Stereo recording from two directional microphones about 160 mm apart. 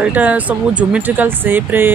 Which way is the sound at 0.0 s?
10° right (ahead or behind).